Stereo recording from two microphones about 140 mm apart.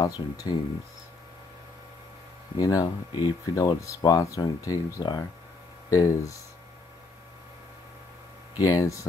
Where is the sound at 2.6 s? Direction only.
25° left (ahead or behind).